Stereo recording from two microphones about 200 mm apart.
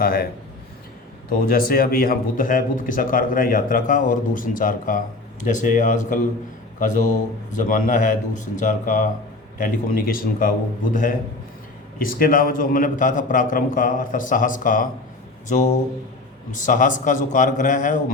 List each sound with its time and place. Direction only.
0.0 s speech: 50° left (ahead or behind)
1.3 s a man's voice: 45° left (ahead or behind)
11.9 s a man's voice: 45° left (ahead or behind)